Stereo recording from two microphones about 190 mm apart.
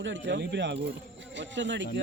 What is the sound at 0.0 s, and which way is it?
Speech, 75° right (ahead or behind).